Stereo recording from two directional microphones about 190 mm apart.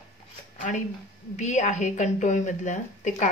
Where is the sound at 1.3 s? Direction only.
40° left (ahead or behind).